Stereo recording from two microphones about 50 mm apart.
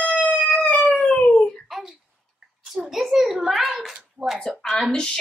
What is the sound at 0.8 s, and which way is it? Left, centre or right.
Dog, left.